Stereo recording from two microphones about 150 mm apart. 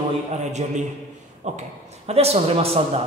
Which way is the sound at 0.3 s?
50° right (ahead or behind).